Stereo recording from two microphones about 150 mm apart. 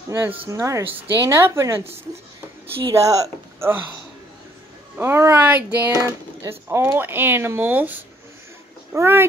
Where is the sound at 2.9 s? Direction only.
20° right (ahead or behind).